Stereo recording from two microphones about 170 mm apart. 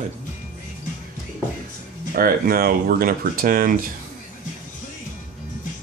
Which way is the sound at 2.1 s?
60° right (ahead or behind).